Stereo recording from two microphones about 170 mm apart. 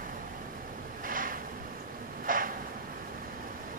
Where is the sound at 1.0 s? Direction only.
55° right (ahead or behind).